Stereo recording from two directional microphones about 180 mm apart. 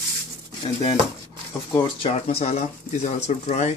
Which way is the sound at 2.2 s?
35° left (ahead or behind).